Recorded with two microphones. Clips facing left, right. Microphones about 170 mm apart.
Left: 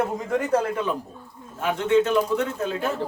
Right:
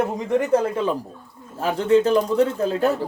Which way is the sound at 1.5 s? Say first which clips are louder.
Right 2 dB; 35° right (ahead or behind).